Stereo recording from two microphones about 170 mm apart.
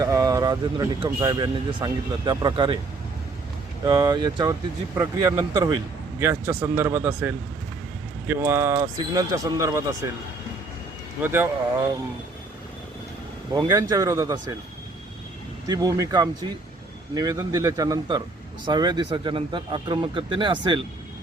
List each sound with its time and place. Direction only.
0.0 s speech: 20° right (ahead or behind)
3.8 s a man's voice: 25° right (ahead or behind)
11.2 s a man's voice: 15° right (ahead or behind)
13.5 s speech: 20° right (ahead or behind)
15.6 s speech: 20° right (ahead or behind)